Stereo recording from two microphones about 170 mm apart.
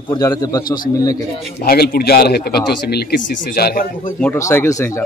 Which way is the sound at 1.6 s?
60° left (ahead or behind).